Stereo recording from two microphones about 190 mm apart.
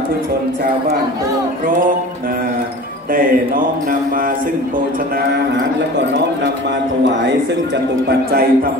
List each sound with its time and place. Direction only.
3.1 s speech: 45° right (ahead or behind)
8.1 s speech: 55° right (ahead or behind)